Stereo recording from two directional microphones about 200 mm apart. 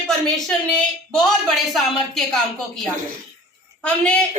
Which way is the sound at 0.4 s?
Centre (ahead or behind).